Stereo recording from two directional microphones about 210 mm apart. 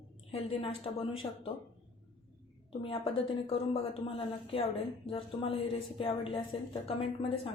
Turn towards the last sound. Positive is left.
turn(degrees=25)  # may be behind; listen again after turning